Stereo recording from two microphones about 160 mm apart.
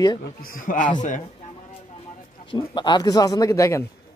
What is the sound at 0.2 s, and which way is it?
A man's voice, 65° left (ahead or behind).